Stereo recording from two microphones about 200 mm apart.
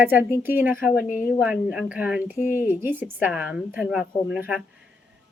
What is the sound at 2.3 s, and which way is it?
Speech, 40° left (ahead or behind).